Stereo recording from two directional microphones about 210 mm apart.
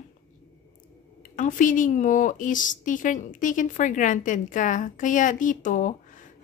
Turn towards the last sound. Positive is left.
turn(degrees=35)  # may be behind; listen again after turning